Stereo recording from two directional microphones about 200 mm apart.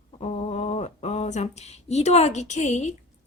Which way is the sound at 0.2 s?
30° left (ahead or behind).